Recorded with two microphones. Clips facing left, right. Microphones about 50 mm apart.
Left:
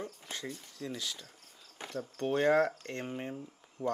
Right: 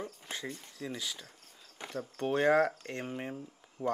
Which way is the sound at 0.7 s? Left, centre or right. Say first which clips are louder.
Even; centre.